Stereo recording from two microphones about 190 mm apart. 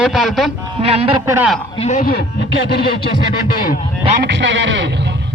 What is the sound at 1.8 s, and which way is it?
Speech, 40° left (ahead or behind).